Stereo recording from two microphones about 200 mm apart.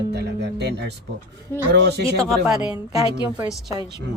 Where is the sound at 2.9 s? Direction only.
20° right (ahead or behind).